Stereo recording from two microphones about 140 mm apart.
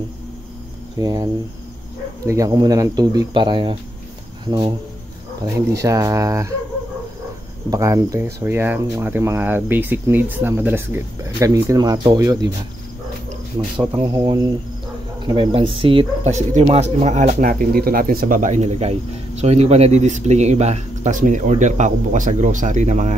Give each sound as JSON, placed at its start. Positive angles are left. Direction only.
{"t": 0.9, "sound": "speech", "side_deg": -25}
{"t": 5.4, "sound": "speech", "side_deg": -25}
{"t": 7.7, "sound": "speech", "side_deg": -25}
{"t": 13.7, "sound": "speech", "side_deg": -40}
{"t": 15.5, "sound": "speech", "side_deg": -40}
{"t": 16.3, "sound": "speech", "side_deg": -55}